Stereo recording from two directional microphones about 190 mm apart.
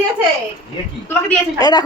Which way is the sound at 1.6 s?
20° left (ahead or behind).